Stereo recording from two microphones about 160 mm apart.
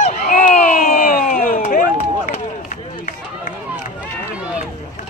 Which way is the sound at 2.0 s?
55° left (ahead or behind).